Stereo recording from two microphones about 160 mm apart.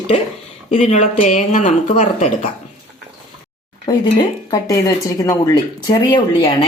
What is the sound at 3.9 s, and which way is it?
Speech, 25° left (ahead or behind).